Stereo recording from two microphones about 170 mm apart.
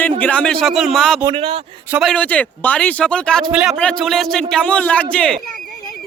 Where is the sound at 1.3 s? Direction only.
35° right (ahead or behind).